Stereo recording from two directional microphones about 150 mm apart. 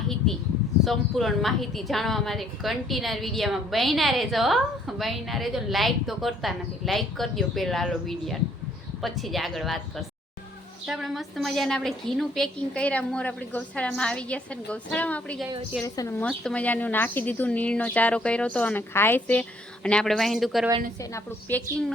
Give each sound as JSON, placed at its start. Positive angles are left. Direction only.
{"t": 0.9, "sound": "a woman's voice", "side_deg": 0}
{"t": 16.4, "sound": "speech", "side_deg": 5}